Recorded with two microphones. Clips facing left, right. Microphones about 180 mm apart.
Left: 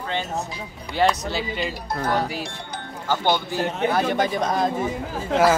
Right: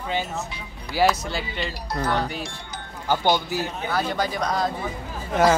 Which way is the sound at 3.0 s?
10° right (ahead or behind).